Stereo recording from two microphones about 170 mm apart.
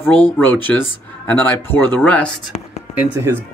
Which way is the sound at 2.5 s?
45° left (ahead or behind).